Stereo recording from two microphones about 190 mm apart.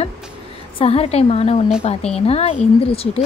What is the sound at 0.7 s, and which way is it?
A woman's voice, 30° left (ahead or behind).